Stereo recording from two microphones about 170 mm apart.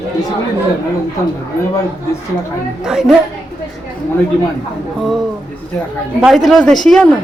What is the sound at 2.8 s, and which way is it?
Speech, 5° right (ahead or behind).